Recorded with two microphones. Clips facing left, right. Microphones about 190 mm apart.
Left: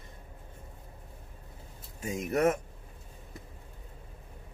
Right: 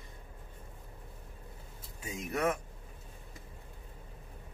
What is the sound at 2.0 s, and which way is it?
Speech, 45° left (ahead or behind).